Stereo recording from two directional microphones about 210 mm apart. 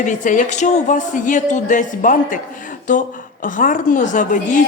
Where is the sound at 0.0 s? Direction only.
40° left (ahead or behind).